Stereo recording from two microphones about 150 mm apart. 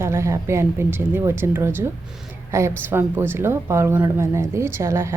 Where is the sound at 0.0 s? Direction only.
20° right (ahead or behind).